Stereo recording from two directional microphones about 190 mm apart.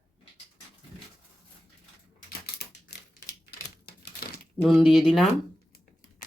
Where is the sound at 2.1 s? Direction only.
60° left (ahead or behind).